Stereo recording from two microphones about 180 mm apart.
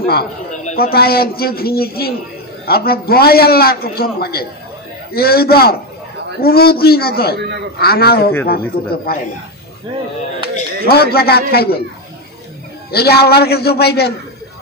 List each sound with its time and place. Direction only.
0.0 s a man's voice: 60° left (ahead or behind)
7.3 s a man's voice: 70° right (ahead or behind)
7.8 s a man's voice: 60° left (ahead or behind)
10.9 s a man's voice: 60° left (ahead or behind)
12.9 s a man's voice: 60° left (ahead or behind)